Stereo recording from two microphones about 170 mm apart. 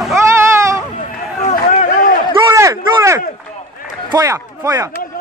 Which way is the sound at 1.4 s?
45° left (ahead or behind).